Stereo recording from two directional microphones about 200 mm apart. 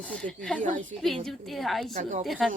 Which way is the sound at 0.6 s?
40° right (ahead or behind).